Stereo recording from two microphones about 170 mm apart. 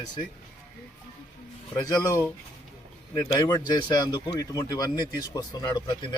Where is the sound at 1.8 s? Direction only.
20° left (ahead or behind).